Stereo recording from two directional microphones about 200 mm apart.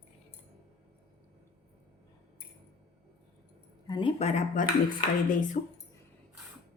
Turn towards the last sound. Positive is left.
turn(degrees=40)  # may be behind; listen again after turning